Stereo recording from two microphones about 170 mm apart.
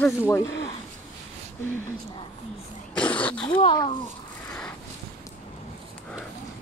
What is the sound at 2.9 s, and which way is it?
Throat clearing, 10° left (ahead or behind).